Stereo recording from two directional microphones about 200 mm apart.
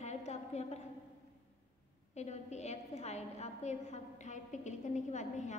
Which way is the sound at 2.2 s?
35° left (ahead or behind).